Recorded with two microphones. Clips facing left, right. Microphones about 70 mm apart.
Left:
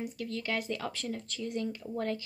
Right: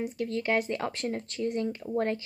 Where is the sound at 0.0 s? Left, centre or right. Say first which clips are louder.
Right 6 dB; right.